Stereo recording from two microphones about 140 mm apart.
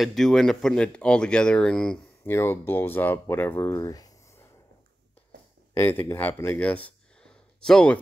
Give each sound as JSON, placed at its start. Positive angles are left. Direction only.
{"t": 0.0, "sound": "speech", "side_deg": 0}
{"t": 2.2, "sound": "speech", "side_deg": 15}
{"t": 5.8, "sound": "speech", "side_deg": 15}